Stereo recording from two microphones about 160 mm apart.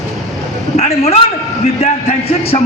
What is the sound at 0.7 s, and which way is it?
Speech, 40° left (ahead or behind).